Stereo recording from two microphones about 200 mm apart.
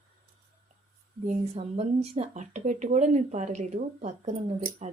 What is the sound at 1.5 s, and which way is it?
Speech, 30° right (ahead or behind).